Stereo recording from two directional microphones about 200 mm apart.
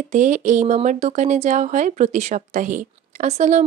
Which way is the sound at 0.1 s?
35° right (ahead or behind).